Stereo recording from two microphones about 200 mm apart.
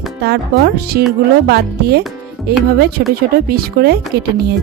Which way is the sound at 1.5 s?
55° right (ahead or behind).